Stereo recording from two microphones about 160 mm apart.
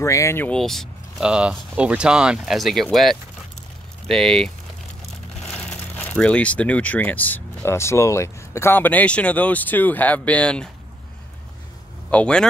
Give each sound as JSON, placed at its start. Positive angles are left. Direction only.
{"t": 0.0, "sound": "speech", "side_deg": 20}
{"t": 0.6, "sound": "speech", "side_deg": 0}
{"t": 5.7, "sound": "speech", "side_deg": 5}
{"t": 12.1, "sound": "speech", "side_deg": 5}